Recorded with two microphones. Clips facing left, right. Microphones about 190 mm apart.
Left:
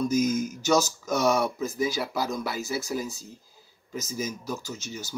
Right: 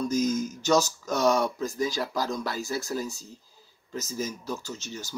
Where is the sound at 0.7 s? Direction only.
Centre (ahead or behind).